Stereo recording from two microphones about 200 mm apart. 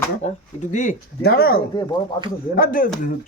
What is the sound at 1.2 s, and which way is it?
Speech, 50° left (ahead or behind).